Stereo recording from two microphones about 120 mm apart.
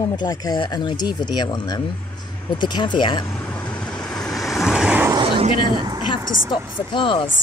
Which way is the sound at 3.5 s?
10° left (ahead or behind).